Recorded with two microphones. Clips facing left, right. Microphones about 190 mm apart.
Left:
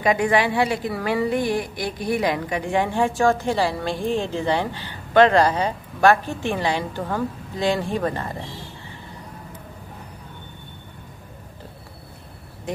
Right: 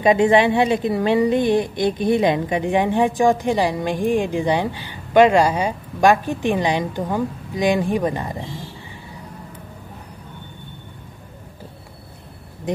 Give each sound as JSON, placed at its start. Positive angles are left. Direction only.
{"t": 0.0, "sound": "a woman's voice", "side_deg": -25}
{"t": 12.7, "sound": "speech", "side_deg": -20}